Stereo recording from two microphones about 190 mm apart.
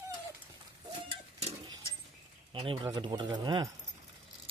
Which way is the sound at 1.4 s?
30° right (ahead or behind).